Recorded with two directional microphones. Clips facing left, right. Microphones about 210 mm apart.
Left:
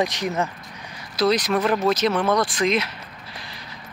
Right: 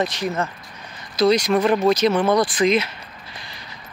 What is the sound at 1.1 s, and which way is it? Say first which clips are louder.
Speech: right 3 dB; centre (ahead or behind).